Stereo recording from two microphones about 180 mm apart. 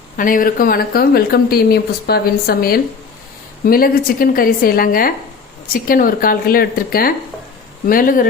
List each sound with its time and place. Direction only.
0.2 s a woman's voice: 50° left (ahead or behind)